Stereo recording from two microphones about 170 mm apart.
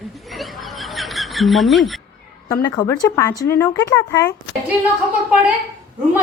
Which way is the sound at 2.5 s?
15° left (ahead or behind).